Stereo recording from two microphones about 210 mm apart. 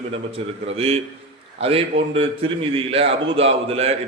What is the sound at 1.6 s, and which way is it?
Speech, 25° right (ahead or behind).